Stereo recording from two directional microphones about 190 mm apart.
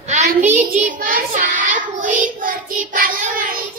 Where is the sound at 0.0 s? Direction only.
35° right (ahead or behind).